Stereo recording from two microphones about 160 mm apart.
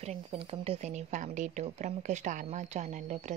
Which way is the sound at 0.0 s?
40° right (ahead or behind).